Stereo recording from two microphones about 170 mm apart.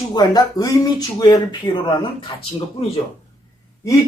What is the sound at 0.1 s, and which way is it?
Speech, 25° left (ahead or behind).